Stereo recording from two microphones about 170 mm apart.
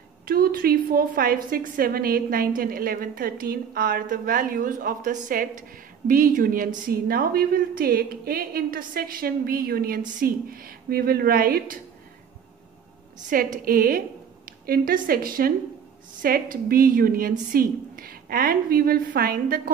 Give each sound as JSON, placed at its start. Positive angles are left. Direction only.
{"t": 0.2, "sound": "a woman's voice", "side_deg": -60}
{"t": 13.3, "sound": "a woman's voice", "side_deg": -55}